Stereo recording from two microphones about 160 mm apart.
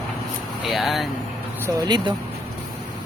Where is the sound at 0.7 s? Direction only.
Centre (ahead or behind).